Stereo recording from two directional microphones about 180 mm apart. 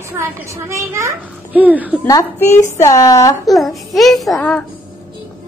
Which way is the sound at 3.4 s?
Centre (ahead or behind).